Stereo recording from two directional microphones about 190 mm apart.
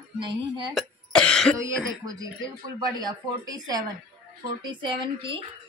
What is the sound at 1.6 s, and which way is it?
Speech, 20° right (ahead or behind).